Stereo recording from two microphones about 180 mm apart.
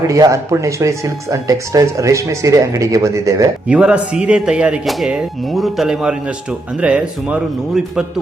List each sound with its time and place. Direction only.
0.1 s speech: 15° right (ahead or behind)
3.7 s speech: 5° right (ahead or behind)